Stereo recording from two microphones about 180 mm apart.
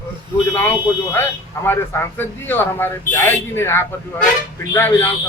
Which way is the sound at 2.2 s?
10° left (ahead or behind).